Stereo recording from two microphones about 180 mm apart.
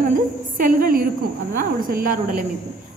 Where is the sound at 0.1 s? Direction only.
50° right (ahead or behind).